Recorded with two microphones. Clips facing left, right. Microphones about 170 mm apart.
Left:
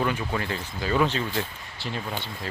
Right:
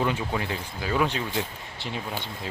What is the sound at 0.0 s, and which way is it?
Speech, 20° right (ahead or behind).